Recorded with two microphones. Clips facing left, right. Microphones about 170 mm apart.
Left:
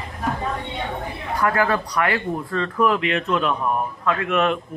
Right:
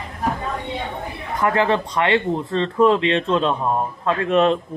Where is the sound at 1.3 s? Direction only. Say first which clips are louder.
Right 2 dB; 25° right (ahead or behind).